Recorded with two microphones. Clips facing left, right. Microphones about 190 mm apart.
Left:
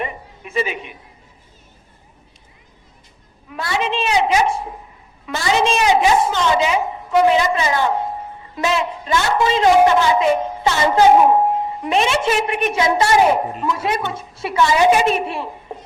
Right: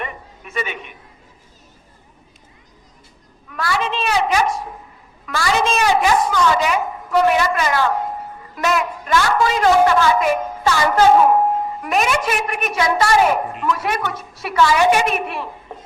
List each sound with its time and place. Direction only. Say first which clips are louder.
0.0 s a sound: left 3 dB; 30° left (ahead or behind)
3.5 s a woman's voice: even; 25° left (ahead or behind)
5.8 s a woman's voice: left 1 dB; 20° left (ahead or behind)